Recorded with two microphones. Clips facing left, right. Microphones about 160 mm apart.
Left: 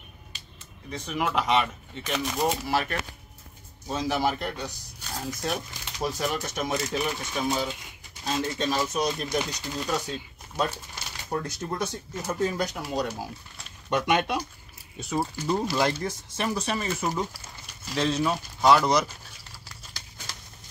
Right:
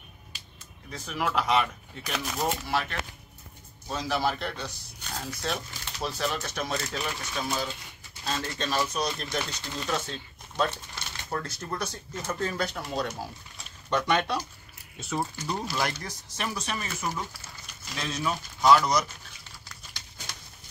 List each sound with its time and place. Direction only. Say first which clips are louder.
0.9 s speech: left 2 dB; 5° right (ahead or behind)
3.9 s speech: left 2 dB; 20° left (ahead or behind)
15.8 s speech: left 5 dB; 25° left (ahead or behind)